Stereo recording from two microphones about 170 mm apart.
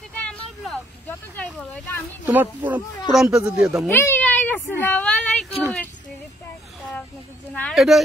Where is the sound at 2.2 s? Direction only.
10° right (ahead or behind).